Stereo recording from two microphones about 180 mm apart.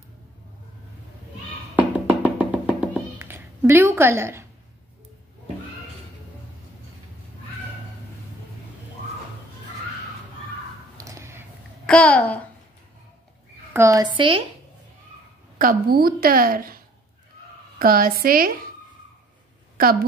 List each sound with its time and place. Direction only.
1.8 s music: 5° right (ahead or behind)
11.0 s a sound: 15° right (ahead or behind)
11.8 s a child's voice: 5° left (ahead or behind)
13.7 s a woman's voice: 20° right (ahead or behind)
15.5 s a woman's voice: 55° right (ahead or behind)